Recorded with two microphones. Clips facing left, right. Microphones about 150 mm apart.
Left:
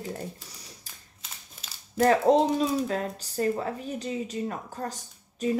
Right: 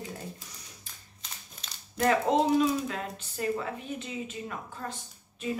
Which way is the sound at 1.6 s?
5° left (ahead or behind).